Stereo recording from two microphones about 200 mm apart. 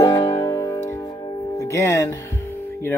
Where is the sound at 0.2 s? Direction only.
20° left (ahead or behind).